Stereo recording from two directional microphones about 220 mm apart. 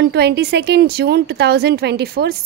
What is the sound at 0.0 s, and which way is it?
A woman's voice, 50° right (ahead or behind).